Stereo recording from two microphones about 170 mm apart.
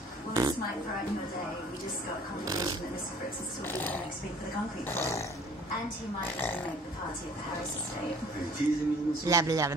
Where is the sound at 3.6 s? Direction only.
10° left (ahead or behind).